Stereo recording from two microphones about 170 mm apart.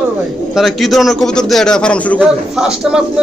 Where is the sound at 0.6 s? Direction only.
Centre (ahead or behind).